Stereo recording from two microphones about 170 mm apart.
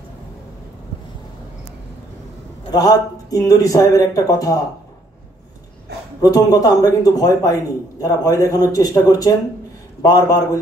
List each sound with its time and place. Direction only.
2.7 s speech: 20° left (ahead or behind)
6.2 s speech: 20° left (ahead or behind)